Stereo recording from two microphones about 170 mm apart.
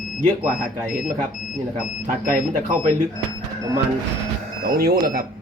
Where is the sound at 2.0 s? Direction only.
50° right (ahead or behind).